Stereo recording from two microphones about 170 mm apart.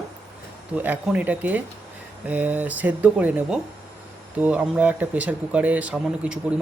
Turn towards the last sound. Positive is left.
turn(degrees=-5)  # may be behind; listen again after turning